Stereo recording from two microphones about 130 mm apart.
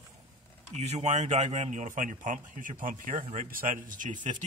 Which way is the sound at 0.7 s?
60° right (ahead or behind).